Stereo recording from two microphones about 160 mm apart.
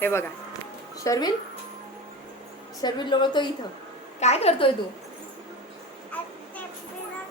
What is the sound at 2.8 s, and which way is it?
Speech, 30° left (ahead or behind).